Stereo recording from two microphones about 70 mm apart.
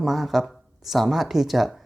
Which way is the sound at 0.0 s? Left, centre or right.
Centre.